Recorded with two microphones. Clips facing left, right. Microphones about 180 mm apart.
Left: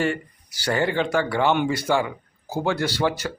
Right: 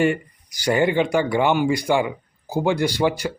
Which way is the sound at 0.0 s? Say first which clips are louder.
Right 4 dB; 15° right (ahead or behind).